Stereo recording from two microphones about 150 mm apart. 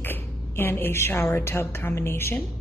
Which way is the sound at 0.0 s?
15° left (ahead or behind).